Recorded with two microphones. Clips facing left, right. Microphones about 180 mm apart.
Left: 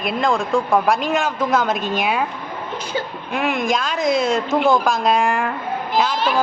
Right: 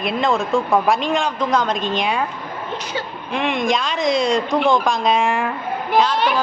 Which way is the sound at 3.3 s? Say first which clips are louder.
Right 1 dB; 5° left (ahead or behind).